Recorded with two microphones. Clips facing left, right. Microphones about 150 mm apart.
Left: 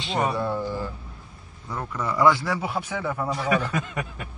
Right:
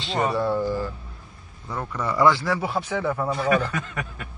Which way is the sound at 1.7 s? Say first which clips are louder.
Right 1 dB; centre (ahead or behind).